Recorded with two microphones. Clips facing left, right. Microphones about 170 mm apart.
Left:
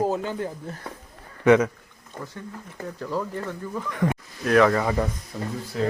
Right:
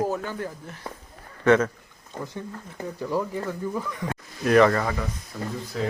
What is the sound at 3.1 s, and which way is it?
A man's voice, 10° right (ahead or behind).